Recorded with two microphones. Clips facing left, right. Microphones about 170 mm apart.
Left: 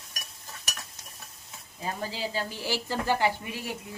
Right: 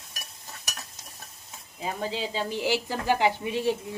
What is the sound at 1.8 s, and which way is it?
A woman's voice, 20° right (ahead or behind).